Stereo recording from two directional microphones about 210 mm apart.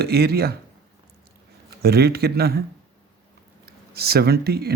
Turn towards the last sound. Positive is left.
turn(degrees=-50)  # may be behind; listen again after turning